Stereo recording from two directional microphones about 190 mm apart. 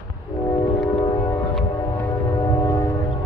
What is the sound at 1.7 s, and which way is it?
Music, 15° left (ahead or behind).